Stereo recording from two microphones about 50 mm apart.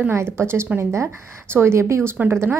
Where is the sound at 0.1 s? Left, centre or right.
Right.